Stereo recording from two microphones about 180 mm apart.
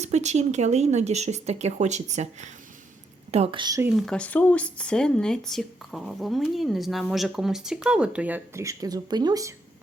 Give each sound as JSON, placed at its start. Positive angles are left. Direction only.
{"t": 0.0, "sound": "a woman's voice", "side_deg": -40}
{"t": 3.8, "sound": "speech", "side_deg": -5}